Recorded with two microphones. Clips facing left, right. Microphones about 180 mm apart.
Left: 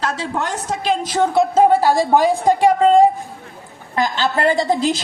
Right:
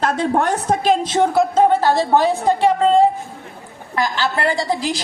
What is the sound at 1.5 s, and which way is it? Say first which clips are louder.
A woman's voice: left 3 dB; 10° left (ahead or behind).